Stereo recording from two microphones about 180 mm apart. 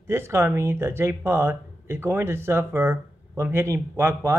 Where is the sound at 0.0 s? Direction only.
15° right (ahead or behind).